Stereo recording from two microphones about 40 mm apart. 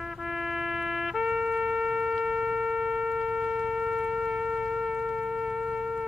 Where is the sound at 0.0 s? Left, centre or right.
Centre.